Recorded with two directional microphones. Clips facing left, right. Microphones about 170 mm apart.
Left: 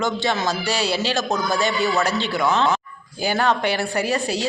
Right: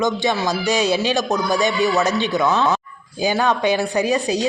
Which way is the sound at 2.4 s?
20° left (ahead or behind).